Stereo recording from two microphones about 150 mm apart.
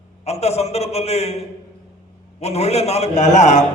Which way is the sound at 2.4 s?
45° left (ahead or behind).